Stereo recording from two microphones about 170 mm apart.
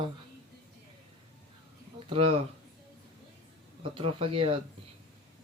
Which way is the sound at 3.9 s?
35° right (ahead or behind).